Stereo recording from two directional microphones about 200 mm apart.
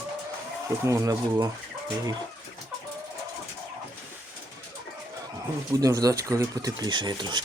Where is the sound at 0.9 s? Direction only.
15° right (ahead or behind).